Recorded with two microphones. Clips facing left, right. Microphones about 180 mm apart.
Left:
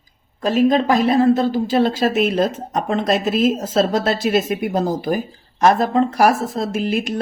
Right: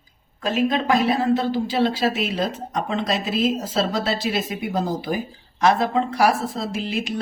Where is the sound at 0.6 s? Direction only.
40° left (ahead or behind).